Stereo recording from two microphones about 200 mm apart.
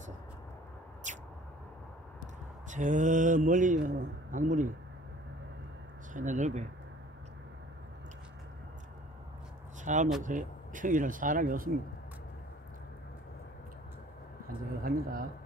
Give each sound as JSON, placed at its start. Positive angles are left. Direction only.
{"t": 1.1, "sound": "a sound", "side_deg": -40}
{"t": 2.7, "sound": "mantra", "side_deg": -40}
{"t": 6.1, "sound": "mantra", "side_deg": -40}
{"t": 9.9, "sound": "mantra", "side_deg": -40}
{"t": 14.8, "sound": "speech", "side_deg": -45}